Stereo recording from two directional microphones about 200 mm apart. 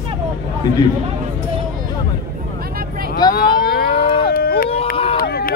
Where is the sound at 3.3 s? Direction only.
50° left (ahead or behind).